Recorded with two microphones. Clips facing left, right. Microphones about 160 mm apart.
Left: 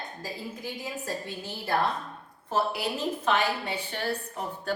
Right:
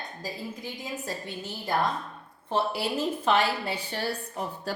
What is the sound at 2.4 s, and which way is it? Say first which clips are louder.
A woman's voice: even; 30° right (ahead or behind).